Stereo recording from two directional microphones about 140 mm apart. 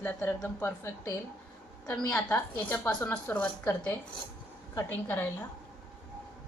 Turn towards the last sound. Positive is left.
turn(degrees=15)  # may be behind; listen again after turning